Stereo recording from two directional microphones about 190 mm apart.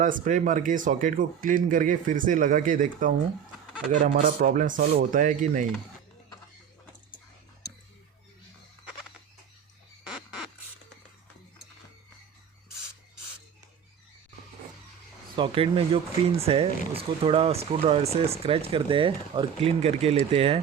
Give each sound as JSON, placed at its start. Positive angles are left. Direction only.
{"t": 0.0, "sound": "speech", "side_deg": -45}
{"t": 15.4, "sound": "speech", "side_deg": -30}